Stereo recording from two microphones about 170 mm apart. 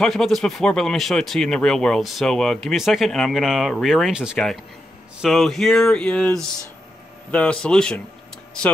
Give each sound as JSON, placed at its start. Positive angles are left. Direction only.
{"t": 0.0, "sound": "speech", "side_deg": 0}